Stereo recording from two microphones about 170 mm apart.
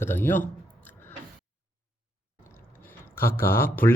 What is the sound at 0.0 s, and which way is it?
Speech, 10° left (ahead or behind).